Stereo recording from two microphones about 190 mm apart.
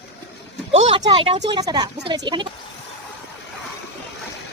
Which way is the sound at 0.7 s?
25° right (ahead or behind).